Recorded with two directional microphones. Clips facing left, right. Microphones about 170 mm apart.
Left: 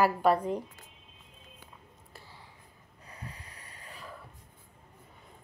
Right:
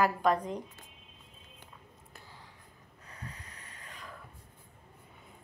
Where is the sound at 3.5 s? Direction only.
35° left (ahead or behind).